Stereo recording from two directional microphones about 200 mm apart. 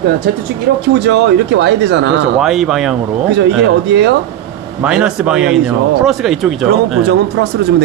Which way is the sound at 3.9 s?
60° right (ahead or behind).